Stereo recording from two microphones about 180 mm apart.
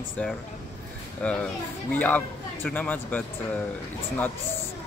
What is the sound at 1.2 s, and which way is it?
Speech, 5° left (ahead or behind).